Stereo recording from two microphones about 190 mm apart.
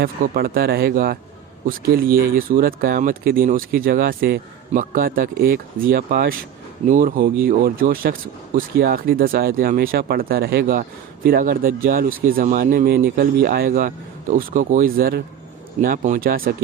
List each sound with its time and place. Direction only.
0.0 s speech: 50° right (ahead or behind)